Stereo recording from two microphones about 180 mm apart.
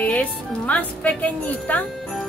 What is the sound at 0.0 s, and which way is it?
Music, 10° left (ahead or behind).